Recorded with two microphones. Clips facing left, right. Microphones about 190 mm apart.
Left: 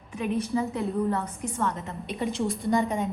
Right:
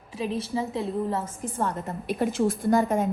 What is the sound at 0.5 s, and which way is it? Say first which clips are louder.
Speech: left 2 dB; 15° right (ahead or behind).